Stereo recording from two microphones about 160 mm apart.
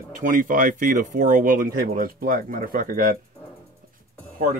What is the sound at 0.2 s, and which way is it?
Speech, 55° right (ahead or behind).